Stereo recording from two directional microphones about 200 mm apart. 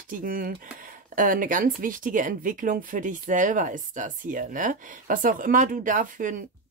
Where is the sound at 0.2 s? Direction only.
45° right (ahead or behind).